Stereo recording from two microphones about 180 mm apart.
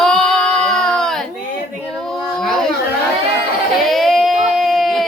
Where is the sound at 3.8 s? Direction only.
Centre (ahead or behind).